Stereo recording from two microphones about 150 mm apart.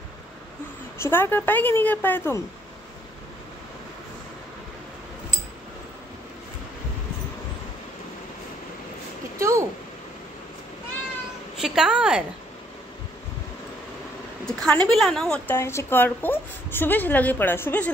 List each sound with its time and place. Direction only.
0.9 s a woman's voice: 15° left (ahead or behind)
9.4 s a sound: 20° right (ahead or behind)
11.6 s a woman's voice: 5° right (ahead or behind)
14.4 s a woman's voice: 5° left (ahead or behind)